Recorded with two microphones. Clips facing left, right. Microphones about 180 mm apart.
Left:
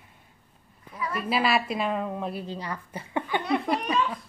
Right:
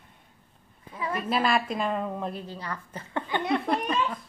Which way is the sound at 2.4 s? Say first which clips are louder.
Left 2 dB; 15° left (ahead or behind).